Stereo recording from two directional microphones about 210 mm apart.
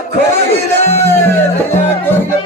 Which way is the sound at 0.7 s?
10° left (ahead or behind).